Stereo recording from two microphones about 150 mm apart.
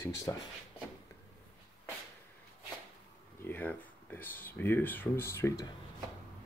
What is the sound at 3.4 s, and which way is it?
Speech, 15° left (ahead or behind).